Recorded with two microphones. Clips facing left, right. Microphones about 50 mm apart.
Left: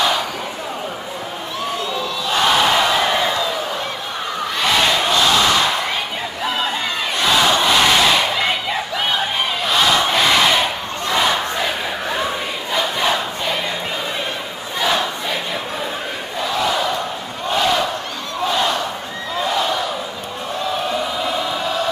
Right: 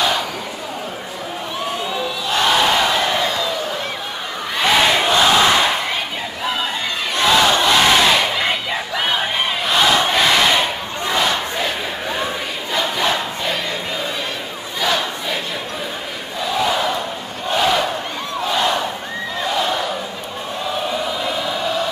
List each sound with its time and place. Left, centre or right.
2.0 s battle cry: centre
4.6 s battle cry: centre
6.4 s crowd: centre
7.2 s battle cry: centre
9.7 s crowd: centre
11.1 s battle cry: centre
12.7 s crowd: centre
14.8 s crowd: centre
16.5 s battle cry: centre
18.5 s a sound: centre
19.4 s crowd: centre
20.9 s a sound: centre